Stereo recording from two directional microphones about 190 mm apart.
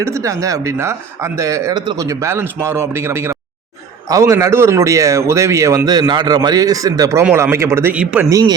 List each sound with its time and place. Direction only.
0.0 s speech: 15° right (ahead or behind)
8.3 s a man's voice: 20° right (ahead or behind)